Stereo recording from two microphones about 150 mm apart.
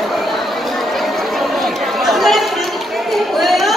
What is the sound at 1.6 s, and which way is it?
Chatter, centre (ahead or behind).